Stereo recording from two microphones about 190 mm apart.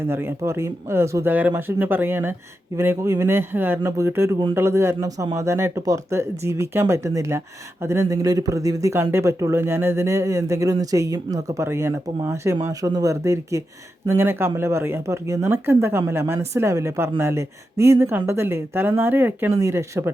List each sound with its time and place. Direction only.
0.0 s speech: 10° right (ahead or behind)